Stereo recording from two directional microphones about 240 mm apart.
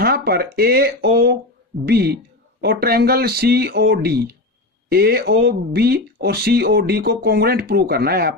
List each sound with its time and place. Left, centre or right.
0.0 s speech: right